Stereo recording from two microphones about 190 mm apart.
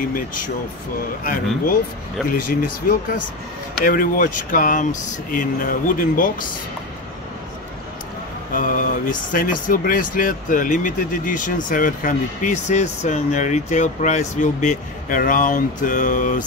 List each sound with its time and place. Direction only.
1.2 s speech: 50° left (ahead or behind)
8.5 s speech: 45° left (ahead or behind)